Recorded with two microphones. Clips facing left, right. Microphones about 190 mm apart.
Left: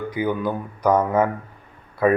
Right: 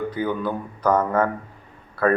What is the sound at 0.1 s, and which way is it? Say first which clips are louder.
A man's voice: left 1 dB; 10° left (ahead or behind).